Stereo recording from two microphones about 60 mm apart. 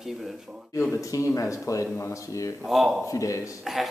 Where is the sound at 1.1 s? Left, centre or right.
Left.